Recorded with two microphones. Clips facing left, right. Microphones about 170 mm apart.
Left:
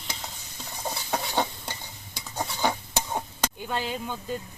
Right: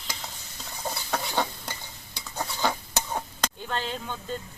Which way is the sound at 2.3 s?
15° left (ahead or behind).